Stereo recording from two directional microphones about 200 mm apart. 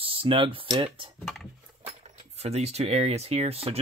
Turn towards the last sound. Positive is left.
turn(degrees=-30)  # may be behind; listen again after turning